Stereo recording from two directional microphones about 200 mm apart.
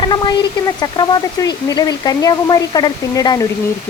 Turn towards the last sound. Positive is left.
turn(degrees=20)  # may be behind; listen again after turning